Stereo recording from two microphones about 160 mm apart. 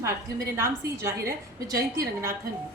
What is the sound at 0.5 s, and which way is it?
Speech, 20° right (ahead or behind).